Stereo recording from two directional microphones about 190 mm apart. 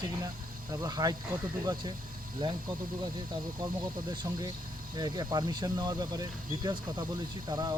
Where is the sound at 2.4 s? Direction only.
25° right (ahead or behind).